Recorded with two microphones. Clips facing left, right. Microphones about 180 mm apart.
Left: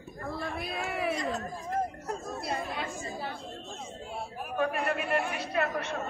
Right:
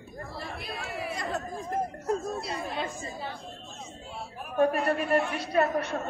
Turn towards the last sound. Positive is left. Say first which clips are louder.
# right 5 dB
turn(degrees=-40)  # may be behind; listen again after turning